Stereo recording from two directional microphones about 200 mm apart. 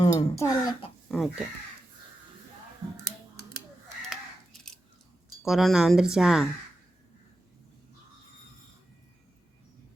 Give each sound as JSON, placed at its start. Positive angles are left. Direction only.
{"t": 0.0, "sound": "speech", "side_deg": 20}
{"t": 1.0, "sound": "speech", "side_deg": 0}
{"t": 5.4, "sound": "speech", "side_deg": 0}